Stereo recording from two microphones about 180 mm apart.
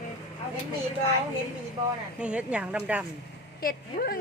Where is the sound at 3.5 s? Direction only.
55° left (ahead or behind).